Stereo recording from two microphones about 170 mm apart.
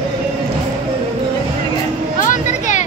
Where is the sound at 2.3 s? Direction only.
45° left (ahead or behind).